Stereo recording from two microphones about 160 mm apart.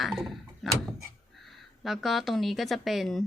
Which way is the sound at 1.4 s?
Centre (ahead or behind).